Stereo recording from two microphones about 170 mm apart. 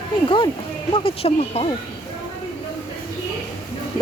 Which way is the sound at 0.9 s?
30° left (ahead or behind).